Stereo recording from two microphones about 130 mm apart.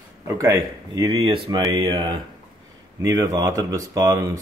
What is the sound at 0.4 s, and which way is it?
Speech, 30° right (ahead or behind).